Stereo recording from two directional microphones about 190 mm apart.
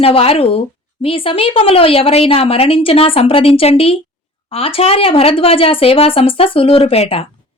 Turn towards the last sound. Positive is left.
turn(degrees=30)  # may be behind; listen again after turning